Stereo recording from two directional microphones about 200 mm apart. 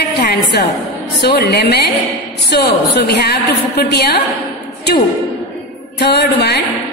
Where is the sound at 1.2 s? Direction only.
55° left (ahead or behind).